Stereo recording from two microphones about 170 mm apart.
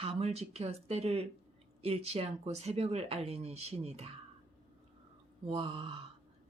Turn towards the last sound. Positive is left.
turn(degrees=-35)  # may be behind; listen again after turning